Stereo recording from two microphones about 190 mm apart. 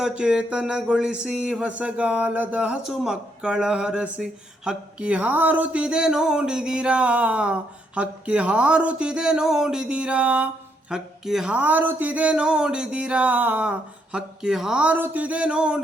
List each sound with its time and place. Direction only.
0.0 s speech: 5° right (ahead or behind)